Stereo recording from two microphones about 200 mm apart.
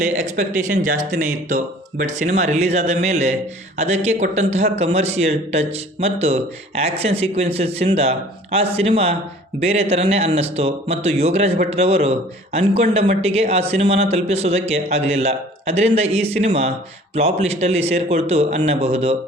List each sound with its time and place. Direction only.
0.0 s a man's voice: 35° right (ahead or behind)